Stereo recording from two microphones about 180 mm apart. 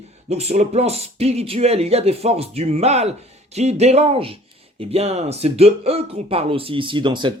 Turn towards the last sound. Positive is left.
turn(degrees=-25)  # may be behind; listen again after turning